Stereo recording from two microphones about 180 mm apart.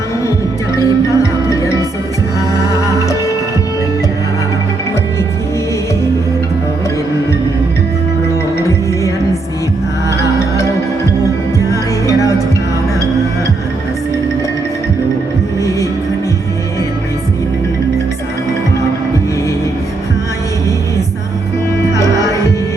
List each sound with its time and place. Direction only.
0.8 s music: 15° left (ahead or behind)
2.8 s music: 15° left (ahead or behind)
11.7 s music: 20° left (ahead or behind)
21.9 s music: 15° left (ahead or behind)